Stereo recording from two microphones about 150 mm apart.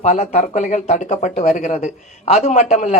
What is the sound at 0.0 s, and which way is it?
Speech, 50° left (ahead or behind).